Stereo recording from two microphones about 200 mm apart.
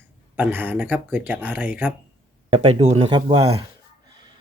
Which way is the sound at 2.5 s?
30° right (ahead or behind).